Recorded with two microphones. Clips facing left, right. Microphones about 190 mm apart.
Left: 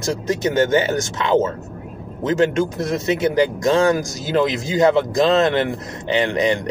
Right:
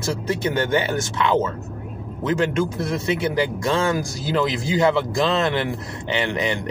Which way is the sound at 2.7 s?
45° left (ahead or behind).